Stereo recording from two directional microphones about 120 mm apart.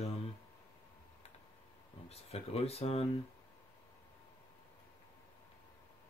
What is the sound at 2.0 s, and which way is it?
Speech, 60° left (ahead or behind).